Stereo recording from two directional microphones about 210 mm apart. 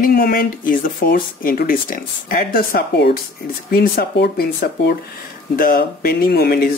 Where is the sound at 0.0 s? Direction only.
45° left (ahead or behind).